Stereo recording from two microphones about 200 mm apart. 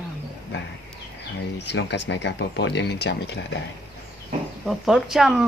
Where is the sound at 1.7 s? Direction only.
60° left (ahead or behind).